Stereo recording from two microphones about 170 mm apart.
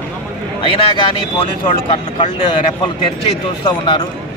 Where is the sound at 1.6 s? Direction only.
30° left (ahead or behind).